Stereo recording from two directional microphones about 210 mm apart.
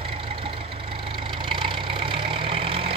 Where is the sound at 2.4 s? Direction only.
25° right (ahead or behind).